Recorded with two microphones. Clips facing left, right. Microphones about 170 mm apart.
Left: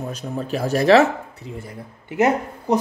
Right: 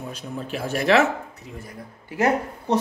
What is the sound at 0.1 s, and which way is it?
Speech, 40° left (ahead or behind).